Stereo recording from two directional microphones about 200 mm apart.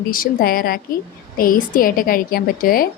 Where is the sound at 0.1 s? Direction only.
45° left (ahead or behind).